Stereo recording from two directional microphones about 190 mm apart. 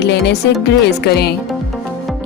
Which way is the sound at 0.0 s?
60° left (ahead or behind).